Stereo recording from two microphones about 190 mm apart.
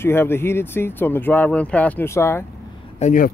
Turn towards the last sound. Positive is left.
turn(degrees=40)  # may be behind; listen again after turning